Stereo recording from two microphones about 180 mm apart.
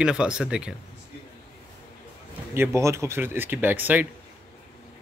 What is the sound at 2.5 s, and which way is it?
Speech, 15° right (ahead or behind).